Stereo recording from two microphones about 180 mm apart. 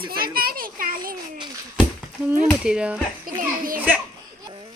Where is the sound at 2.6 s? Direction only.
5° right (ahead or behind).